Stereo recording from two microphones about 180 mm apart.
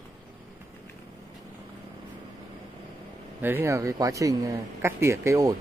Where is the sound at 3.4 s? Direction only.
10° right (ahead or behind).